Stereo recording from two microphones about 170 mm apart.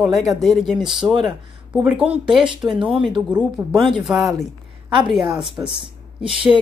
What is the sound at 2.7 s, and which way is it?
Speech, 30° right (ahead or behind).